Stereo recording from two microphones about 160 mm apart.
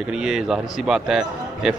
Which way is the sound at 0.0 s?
5° right (ahead or behind).